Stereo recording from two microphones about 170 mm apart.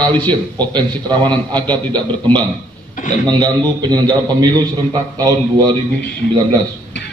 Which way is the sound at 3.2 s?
25° right (ahead or behind).